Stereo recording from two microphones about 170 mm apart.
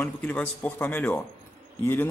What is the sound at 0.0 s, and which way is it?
Speech, 10° left (ahead or behind).